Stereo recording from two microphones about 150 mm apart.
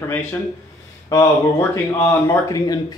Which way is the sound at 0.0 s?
15° left (ahead or behind).